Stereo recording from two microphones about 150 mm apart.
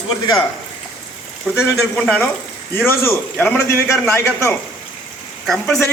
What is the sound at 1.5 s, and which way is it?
A man's voice, centre (ahead or behind).